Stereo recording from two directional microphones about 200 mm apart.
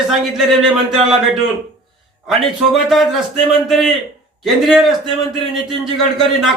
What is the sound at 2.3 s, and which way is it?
A man's voice, centre (ahead or behind).